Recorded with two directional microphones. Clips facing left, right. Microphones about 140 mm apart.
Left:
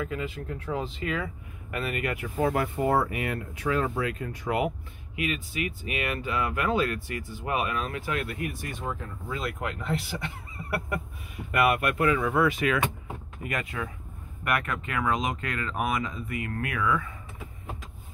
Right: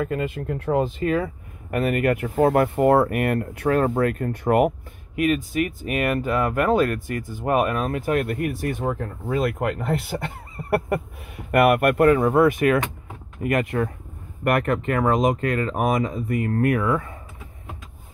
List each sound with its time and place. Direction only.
0.0 s speech: 55° right (ahead or behind)